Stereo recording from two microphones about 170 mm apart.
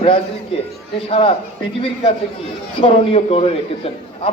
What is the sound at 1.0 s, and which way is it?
Speech, 35° left (ahead or behind).